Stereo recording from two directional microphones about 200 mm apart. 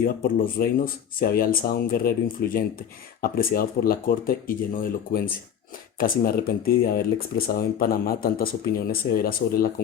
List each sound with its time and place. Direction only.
0.0 s speech: 45° left (ahead or behind)